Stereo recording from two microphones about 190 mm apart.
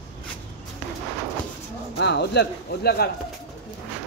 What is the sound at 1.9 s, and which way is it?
Speech, 60° left (ahead or behind).